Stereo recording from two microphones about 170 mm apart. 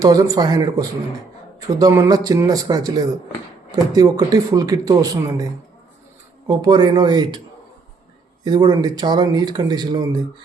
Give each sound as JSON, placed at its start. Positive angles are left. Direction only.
{"t": 0.0, "sound": "speech", "side_deg": -20}
{"t": 6.5, "sound": "speech", "side_deg": -25}
{"t": 8.4, "sound": "speech", "side_deg": -25}